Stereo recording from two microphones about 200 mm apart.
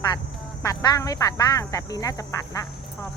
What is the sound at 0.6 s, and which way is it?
Speech, 20° left (ahead or behind).